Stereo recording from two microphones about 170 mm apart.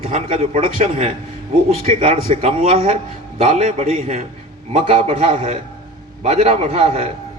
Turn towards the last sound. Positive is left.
turn(degrees=-40)  # may be behind; listen again after turning